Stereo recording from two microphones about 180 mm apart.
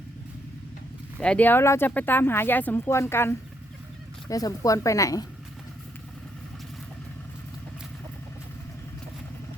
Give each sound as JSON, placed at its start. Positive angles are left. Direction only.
{"t": 1.2, "sound": "speech", "side_deg": 5}